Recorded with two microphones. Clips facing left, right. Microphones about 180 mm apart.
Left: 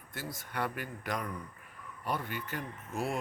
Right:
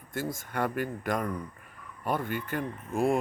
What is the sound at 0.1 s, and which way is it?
Speech, 50° right (ahead or behind).